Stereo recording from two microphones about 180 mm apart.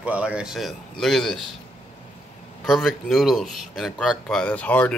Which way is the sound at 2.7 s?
Centre (ahead or behind).